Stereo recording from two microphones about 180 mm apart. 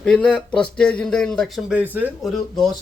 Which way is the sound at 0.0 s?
5° left (ahead or behind).